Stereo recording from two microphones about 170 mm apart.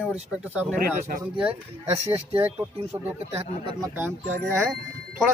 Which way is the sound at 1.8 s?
35° right (ahead or behind).